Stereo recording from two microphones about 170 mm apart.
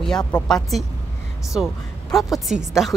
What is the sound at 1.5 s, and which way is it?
A woman's voice, 5° right (ahead or behind).